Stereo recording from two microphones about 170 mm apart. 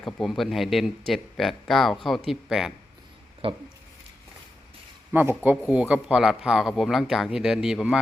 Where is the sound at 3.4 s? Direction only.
35° right (ahead or behind).